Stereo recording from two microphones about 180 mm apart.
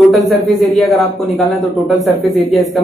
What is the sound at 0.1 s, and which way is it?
Speech, centre (ahead or behind).